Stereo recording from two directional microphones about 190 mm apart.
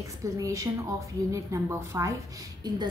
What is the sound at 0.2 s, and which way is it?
A woman's voice, 15° right (ahead or behind).